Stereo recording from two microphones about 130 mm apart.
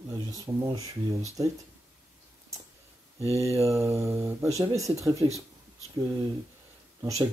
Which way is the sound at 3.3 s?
25° right (ahead or behind).